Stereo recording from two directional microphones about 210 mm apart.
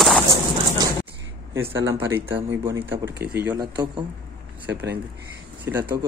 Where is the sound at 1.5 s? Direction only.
10° right (ahead or behind).